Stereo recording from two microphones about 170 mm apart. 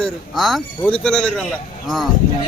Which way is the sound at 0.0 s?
Centre (ahead or behind).